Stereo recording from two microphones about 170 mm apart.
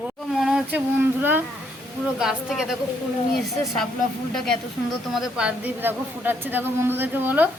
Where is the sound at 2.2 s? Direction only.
Centre (ahead or behind).